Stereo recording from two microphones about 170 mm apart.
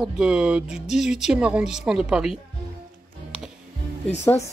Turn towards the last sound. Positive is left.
turn(degrees=15)  # may be behind; listen again after turning